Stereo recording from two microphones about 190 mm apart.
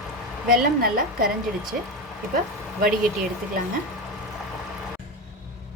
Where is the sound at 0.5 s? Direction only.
50° right (ahead or behind).